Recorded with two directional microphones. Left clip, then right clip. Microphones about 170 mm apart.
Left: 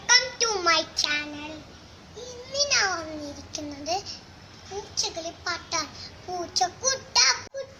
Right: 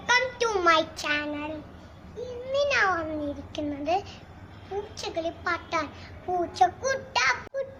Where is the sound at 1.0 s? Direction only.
20° right (ahead or behind).